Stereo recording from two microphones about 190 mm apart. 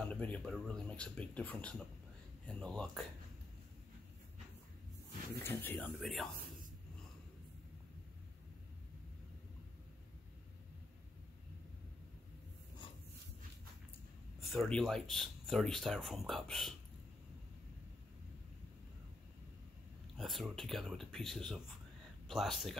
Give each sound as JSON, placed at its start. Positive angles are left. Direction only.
{"t": 0.0, "sound": "a sound", "side_deg": 10}
{"t": 0.4, "sound": "speech", "side_deg": 5}
{"t": 5.4, "sound": "speech", "side_deg": 10}
{"t": 14.5, "sound": "speech", "side_deg": 0}
{"t": 20.2, "sound": "speech", "side_deg": 0}